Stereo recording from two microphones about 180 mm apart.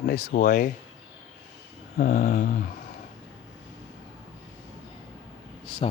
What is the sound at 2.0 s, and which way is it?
Mantra, 50° left (ahead or behind).